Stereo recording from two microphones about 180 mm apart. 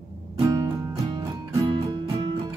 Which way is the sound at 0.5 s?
20° right (ahead or behind).